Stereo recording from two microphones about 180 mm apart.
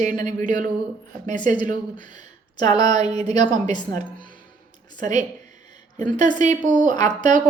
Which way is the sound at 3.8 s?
25° left (ahead or behind).